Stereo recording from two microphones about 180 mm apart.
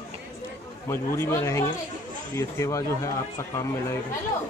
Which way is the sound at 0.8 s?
15° left (ahead or behind).